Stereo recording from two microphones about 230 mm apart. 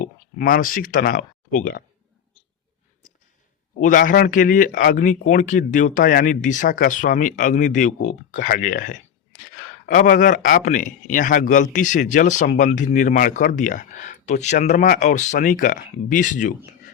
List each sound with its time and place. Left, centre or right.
0.0 s speech: left
3.0 s a sound: left
3.8 s speech: left